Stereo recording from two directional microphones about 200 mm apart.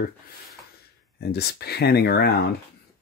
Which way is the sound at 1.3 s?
55° left (ahead or behind).